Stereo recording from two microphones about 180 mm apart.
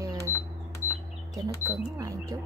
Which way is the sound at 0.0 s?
20° right (ahead or behind).